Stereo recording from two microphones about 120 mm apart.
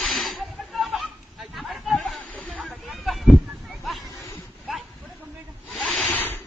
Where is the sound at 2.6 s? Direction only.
Centre (ahead or behind).